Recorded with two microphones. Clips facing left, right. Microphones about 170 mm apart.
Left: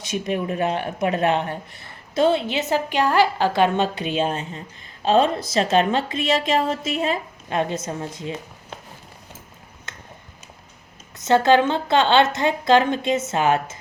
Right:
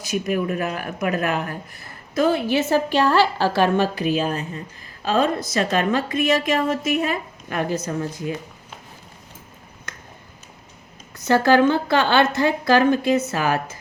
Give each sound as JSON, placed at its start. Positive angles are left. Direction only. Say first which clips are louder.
{"t": 0.0, "sound": "a woman's voice", "louder": "right 2 dB", "side_deg": 30}
{"t": 11.2, "sound": "a woman's voice", "louder": "even", "side_deg": 20}